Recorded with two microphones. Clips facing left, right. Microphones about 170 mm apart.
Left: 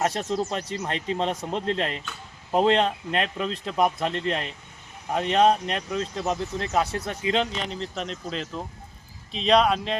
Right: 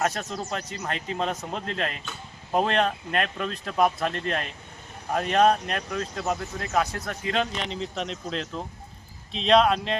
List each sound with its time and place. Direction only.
0.0 s speech: 30° left (ahead or behind)
7.7 s speech: centre (ahead or behind)